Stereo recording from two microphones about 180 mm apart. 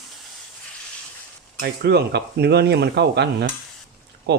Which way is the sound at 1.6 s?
60° right (ahead or behind).